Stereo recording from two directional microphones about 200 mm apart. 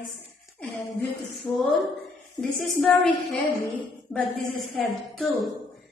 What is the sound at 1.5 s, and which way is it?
Speech, 20° left (ahead or behind).